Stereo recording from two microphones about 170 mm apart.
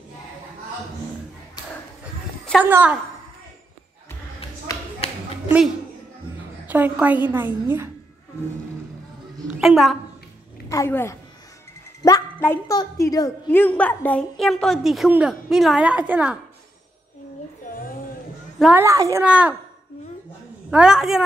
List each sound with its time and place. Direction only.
2.6 s a woman's voice: 10° right (ahead or behind)
4.7 s a sound: 20° left (ahead or behind)
6.7 s a woman's voice: 10° right (ahead or behind)
9.6 s a woman's voice: centre (ahead or behind)
10.7 s a woman's voice: 15° left (ahead or behind); by 16.3 s 10° right (ahead or behind)
18.6 s a woman's voice: 10° right (ahead or behind)
19.2 s a woman's voice: 5° right (ahead or behind)
20.7 s a woman's voice: 5° right (ahead or behind)